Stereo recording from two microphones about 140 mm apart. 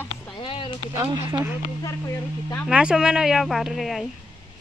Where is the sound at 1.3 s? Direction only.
15° right (ahead or behind).